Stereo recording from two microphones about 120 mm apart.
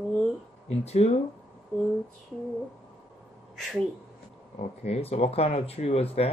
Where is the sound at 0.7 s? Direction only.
60° left (ahead or behind).